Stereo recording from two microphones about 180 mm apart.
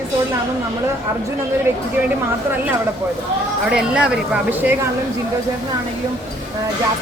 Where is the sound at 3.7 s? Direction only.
5° right (ahead or behind).